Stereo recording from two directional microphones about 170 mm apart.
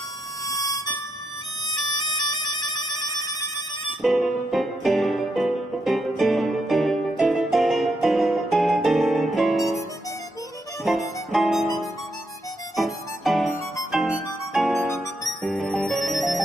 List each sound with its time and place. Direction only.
0.5 s music: 20° left (ahead or behind)
2.3 s music: 25° left (ahead or behind)
3.3 s fire alarm: 25° left (ahead or behind)
4.0 s music: centre (ahead or behind)
10.8 s music: centre (ahead or behind)